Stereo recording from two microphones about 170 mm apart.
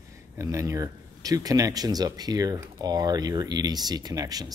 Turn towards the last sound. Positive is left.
turn(degrees=-20)  # may be behind; listen again after turning